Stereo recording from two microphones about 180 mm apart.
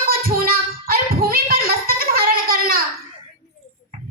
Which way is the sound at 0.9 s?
55° right (ahead or behind).